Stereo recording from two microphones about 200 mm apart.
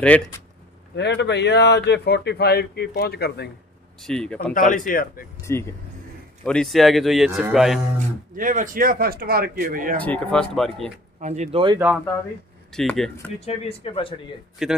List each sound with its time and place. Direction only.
0.0 s speech: 10° left (ahead or behind)
0.9 s speech: 60° left (ahead or behind)
4.0 s a man's voice: 5° left (ahead or behind)
4.6 s speech: 40° left (ahead or behind)
5.4 s speech: 15° left (ahead or behind)
6.4 s a man's voice: 5° left (ahead or behind)
8.4 s speech: 40° right (ahead or behind)
10.0 s a man's voice: 5° left (ahead or behind)
11.1 s speech: 35° right (ahead or behind)
12.7 s a man's voice: 5° left (ahead or behind)
13.7 s speech: 25° left (ahead or behind)
14.6 s a man's voice: centre (ahead or behind)